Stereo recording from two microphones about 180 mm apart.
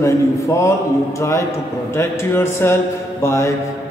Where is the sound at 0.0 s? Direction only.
15° left (ahead or behind).